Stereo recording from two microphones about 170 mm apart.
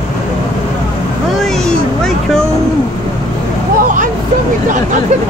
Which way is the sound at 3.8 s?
50° right (ahead or behind).